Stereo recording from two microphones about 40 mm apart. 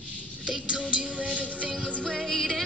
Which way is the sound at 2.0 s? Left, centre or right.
Centre.